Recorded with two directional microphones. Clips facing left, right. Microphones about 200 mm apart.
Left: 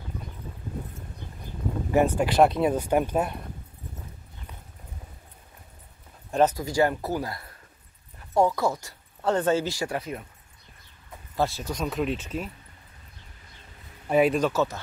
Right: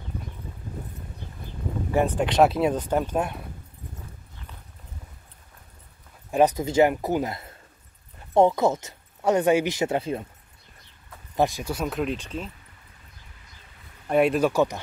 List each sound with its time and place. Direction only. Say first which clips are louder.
2.1 s speech: even; 5° left (ahead or behind)
2.7 s speech: left 1 dB; 10° left (ahead or behind)
6.3 s speech: right 3 dB; 15° right (ahead or behind)
11.3 s speech: right 3 dB; 15° right (ahead or behind); by 12.4 s 5° left (ahead or behind)
14.0 s speech: right 1 dB; centre (ahead or behind)
14.5 s speech: right 3 dB; 15° right (ahead or behind)